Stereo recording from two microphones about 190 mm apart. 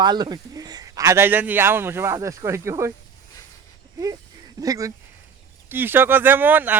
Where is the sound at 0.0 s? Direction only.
20° right (ahead or behind).